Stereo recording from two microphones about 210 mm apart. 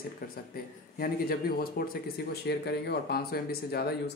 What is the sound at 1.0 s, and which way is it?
Speech, 45° left (ahead or behind).